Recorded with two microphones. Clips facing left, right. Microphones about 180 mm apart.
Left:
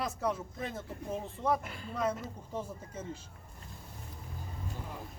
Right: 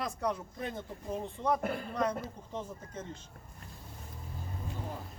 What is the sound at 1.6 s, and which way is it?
Speech, 55° right (ahead or behind).